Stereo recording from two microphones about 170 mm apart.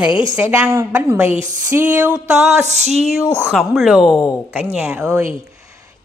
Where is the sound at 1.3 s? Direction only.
45° right (ahead or behind).